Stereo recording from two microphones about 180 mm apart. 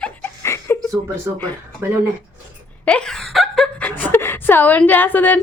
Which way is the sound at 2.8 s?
5° left (ahead or behind).